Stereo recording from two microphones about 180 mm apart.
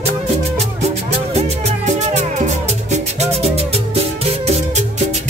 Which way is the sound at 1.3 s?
35° right (ahead or behind).